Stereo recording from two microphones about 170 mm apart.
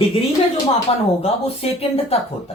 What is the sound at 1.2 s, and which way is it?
Speech, 35° left (ahead or behind).